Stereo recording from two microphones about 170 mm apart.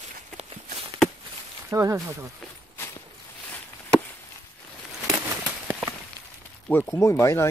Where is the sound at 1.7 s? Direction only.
20° right (ahead or behind).